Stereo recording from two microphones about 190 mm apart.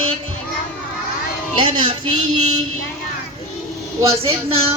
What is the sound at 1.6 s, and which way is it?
Speech, 25° right (ahead or behind).